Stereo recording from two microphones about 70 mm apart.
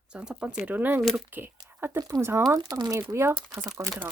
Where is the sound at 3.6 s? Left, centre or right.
Right.